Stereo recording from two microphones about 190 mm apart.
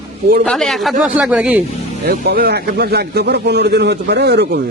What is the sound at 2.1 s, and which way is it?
A man's voice, 55° right (ahead or behind).